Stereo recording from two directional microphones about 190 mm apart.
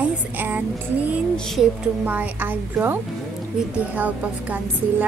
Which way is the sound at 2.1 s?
10° right (ahead or behind).